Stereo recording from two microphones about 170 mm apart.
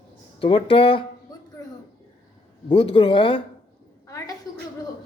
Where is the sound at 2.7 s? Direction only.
30° left (ahead or behind).